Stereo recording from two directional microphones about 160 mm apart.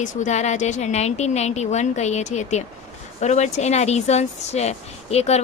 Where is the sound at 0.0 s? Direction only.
50° left (ahead or behind).